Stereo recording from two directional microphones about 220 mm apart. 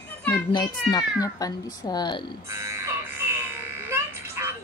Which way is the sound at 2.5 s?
15° right (ahead or behind).